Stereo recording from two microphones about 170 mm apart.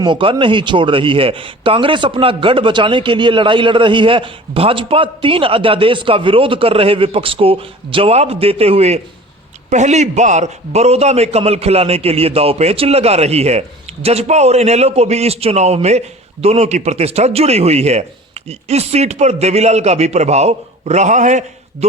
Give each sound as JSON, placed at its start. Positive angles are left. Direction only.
{"t": 0.0, "sound": "speech", "side_deg": -30}